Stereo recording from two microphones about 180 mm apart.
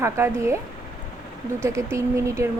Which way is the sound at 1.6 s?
15° right (ahead or behind).